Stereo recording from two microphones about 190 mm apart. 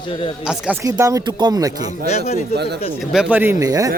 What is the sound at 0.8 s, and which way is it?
Speech, 15° right (ahead or behind).